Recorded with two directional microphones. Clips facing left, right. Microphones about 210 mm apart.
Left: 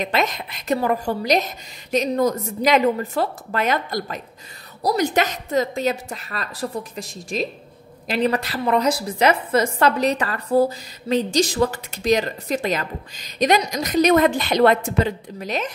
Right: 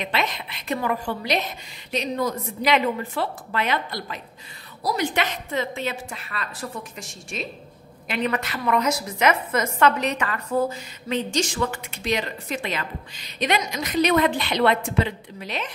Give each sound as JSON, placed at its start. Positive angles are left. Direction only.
{"t": 0.0, "sound": "a woman's voice", "side_deg": 45}